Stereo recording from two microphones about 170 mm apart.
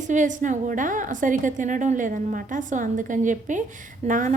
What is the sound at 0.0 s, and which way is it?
A woman's voice, 45° right (ahead or behind).